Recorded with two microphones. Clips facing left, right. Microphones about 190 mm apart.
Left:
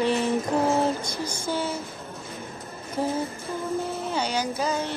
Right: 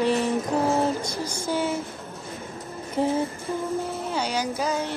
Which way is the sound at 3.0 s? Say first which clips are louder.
Right 3 dB; 25° right (ahead or behind).